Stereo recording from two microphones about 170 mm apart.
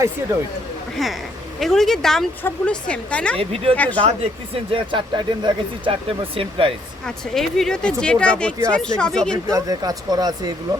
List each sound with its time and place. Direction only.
1.5 s a woman's voice: centre (ahead or behind)
3.3 s speech: 35° right (ahead or behind)
7.0 s a woman's voice: centre (ahead or behind)
9.5 s speech: 20° right (ahead or behind)